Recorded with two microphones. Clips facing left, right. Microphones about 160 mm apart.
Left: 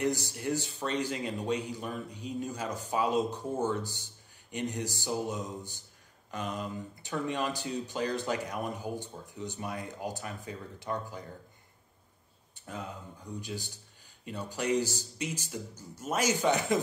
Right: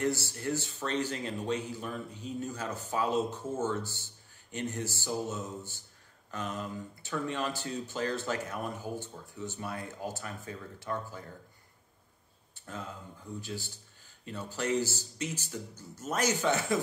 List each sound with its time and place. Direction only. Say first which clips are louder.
0.0 s a man's voice: left 1 dB; 15° left (ahead or behind)
12.5 s a man's voice: left 1 dB; 15° left (ahead or behind)